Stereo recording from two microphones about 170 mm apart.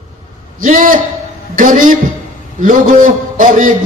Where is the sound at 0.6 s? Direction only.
50° right (ahead or behind).